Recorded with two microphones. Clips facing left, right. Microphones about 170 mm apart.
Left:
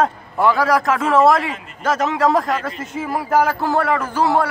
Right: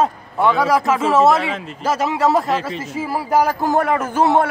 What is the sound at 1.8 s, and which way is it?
Speech, 10° right (ahead or behind).